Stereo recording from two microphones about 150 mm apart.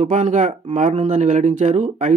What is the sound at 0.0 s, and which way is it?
Speech, 55° right (ahead or behind).